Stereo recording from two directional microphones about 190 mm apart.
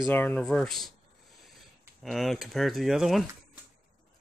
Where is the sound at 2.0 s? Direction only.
Centre (ahead or behind).